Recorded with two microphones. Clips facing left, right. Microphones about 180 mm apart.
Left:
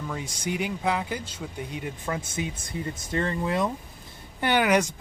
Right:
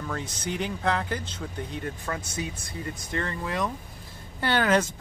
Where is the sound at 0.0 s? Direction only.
10° left (ahead or behind).